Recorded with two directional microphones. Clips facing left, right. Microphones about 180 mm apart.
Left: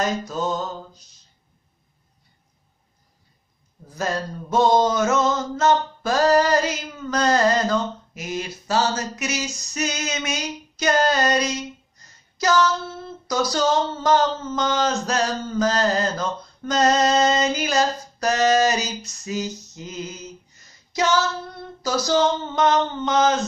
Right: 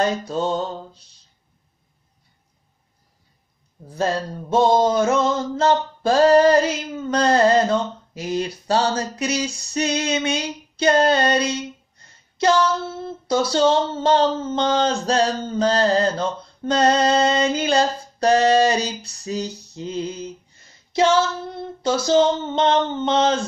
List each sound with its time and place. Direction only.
0.0 s male singing: 30° right (ahead or behind)
3.8 s male singing: 30° right (ahead or behind)
13.3 s a sound: 30° right (ahead or behind)